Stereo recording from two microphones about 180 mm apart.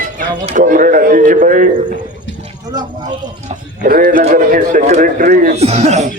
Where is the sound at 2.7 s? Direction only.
25° right (ahead or behind).